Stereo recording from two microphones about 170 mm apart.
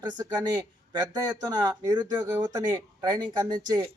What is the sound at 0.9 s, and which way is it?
Speech, 25° right (ahead or behind).